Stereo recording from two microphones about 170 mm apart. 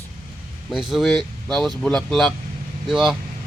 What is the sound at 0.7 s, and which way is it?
A man's voice, centre (ahead or behind).